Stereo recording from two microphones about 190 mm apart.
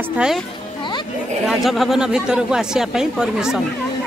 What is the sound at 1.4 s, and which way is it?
Speech, centre (ahead or behind).